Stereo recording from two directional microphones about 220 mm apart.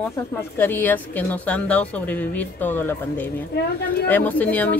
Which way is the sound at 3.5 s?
45° left (ahead or behind).